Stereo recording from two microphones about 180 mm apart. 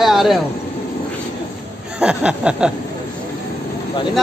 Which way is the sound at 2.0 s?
5° right (ahead or behind).